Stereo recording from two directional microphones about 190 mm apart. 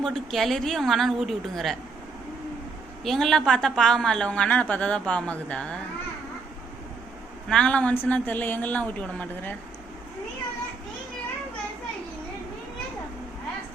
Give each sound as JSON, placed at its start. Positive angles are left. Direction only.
{"t": 0.0, "sound": "a woman's voice", "side_deg": 0}
{"t": 3.0, "sound": "a woman's voice", "side_deg": 0}
{"t": 7.5, "sound": "a woman's voice", "side_deg": 5}